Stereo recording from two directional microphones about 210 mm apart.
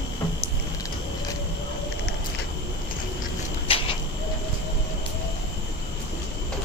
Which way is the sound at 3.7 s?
25° left (ahead or behind).